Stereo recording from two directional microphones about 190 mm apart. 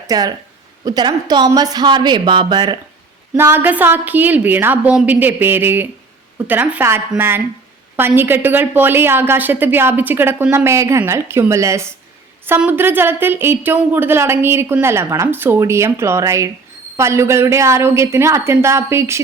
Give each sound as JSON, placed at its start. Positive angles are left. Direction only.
{"t": 0.1, "sound": "a woman's voice", "side_deg": -20}
{"t": 3.3, "sound": "a woman's voice", "side_deg": -10}